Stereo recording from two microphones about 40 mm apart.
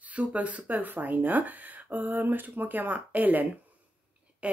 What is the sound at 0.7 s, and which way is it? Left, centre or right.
Speech, right.